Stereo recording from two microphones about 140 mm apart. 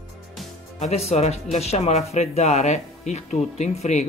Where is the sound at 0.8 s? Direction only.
50° left (ahead or behind).